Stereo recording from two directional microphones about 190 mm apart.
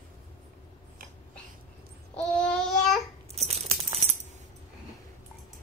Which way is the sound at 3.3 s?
35° right (ahead or behind).